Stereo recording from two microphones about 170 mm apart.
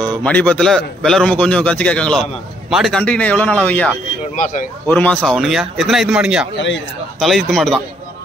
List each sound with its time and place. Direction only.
0.2 s a man's voice: 10° left (ahead or behind)
4.4 s speech: 50° left (ahead or behind)
4.8 s a man's voice: 10° left (ahead or behind)